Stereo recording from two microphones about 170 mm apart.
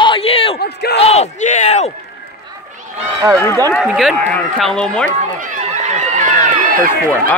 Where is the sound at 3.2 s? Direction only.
20° right (ahead or behind).